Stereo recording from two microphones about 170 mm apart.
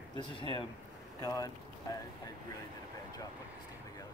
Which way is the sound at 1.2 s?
20° left (ahead or behind).